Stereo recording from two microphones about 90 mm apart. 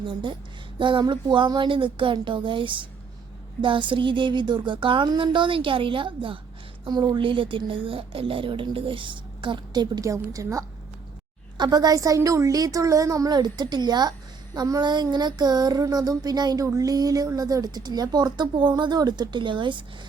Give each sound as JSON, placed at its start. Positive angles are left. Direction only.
{"t": 0.0, "sound": "a woman's voice", "side_deg": -65}
{"t": 6.8, "sound": "a woman's voice", "side_deg": -50}
{"t": 7.2, "sound": "a woman's voice", "side_deg": -75}
{"t": 9.8, "sound": "a woman's voice", "side_deg": -45}
{"t": 11.5, "sound": "a woman's voice", "side_deg": -50}